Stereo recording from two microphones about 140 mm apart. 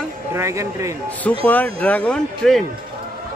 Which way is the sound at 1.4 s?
10° left (ahead or behind).